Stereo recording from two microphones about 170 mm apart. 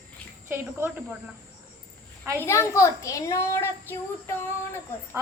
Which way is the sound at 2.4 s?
15° left (ahead or behind).